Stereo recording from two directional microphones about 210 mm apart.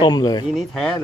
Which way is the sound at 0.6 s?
Centre (ahead or behind).